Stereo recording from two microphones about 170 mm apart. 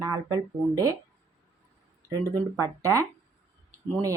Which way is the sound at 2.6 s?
20° right (ahead or behind).